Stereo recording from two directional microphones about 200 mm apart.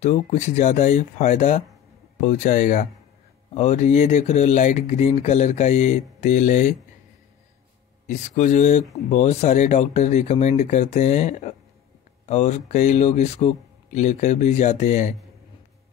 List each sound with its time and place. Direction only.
0.0 s speech: 35° left (ahead or behind)
8.1 s speech: 35° left (ahead or behind)